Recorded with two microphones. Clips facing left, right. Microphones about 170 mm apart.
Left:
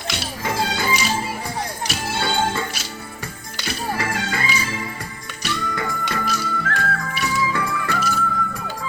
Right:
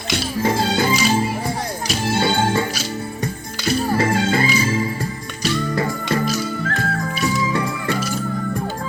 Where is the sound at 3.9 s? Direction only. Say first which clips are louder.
Right 7 dB; 30° right (ahead or behind).